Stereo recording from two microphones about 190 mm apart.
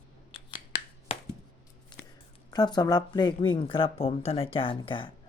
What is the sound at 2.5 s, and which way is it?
Speech, 20° left (ahead or behind).